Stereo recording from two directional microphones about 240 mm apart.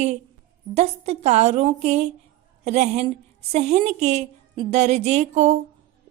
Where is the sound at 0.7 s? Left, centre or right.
Right.